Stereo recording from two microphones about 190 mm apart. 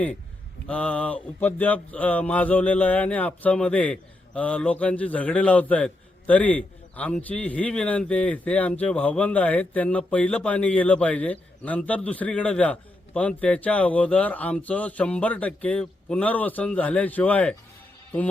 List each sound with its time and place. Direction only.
0.7 s a man's voice: 5° left (ahead or behind)